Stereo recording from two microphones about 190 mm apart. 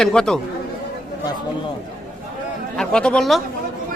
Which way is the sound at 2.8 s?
5° left (ahead or behind).